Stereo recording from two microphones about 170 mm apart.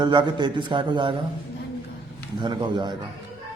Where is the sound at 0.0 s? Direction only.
25° right (ahead or behind).